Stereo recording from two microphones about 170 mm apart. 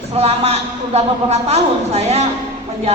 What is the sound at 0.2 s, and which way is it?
A woman's voice, 35° right (ahead or behind).